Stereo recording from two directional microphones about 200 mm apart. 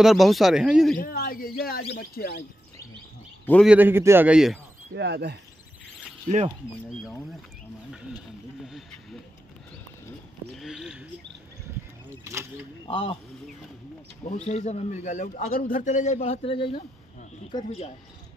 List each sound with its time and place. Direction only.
0.0 s speech: centre (ahead or behind)
0.9 s speech: 45° left (ahead or behind)
3.6 s a man's voice: 10° right (ahead or behind)
4.9 s speech: 55° right (ahead or behind)
8.6 s a sound: centre (ahead or behind)
10.5 s a sound: centre (ahead or behind)
12.8 s speech: 25° left (ahead or behind)
14.3 s a man's voice: 35° left (ahead or behind)